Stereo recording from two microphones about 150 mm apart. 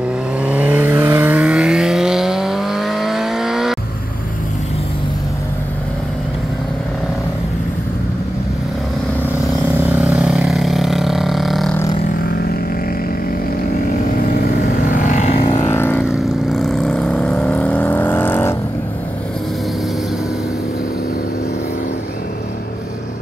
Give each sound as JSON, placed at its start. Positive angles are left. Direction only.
{"t": 0.4, "sound": "vehicle", "side_deg": -10}
{"t": 9.8, "sound": "vehicle", "side_deg": -5}
{"t": 15.0, "sound": "vehicle", "side_deg": 50}
{"t": 15.6, "sound": "vehicle", "side_deg": 15}
{"t": 16.1, "sound": "vehicle", "side_deg": 0}